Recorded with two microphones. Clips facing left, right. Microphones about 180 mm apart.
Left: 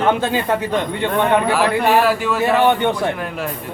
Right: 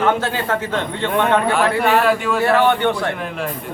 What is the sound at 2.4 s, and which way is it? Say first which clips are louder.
Speech: even; 15° left (ahead or behind).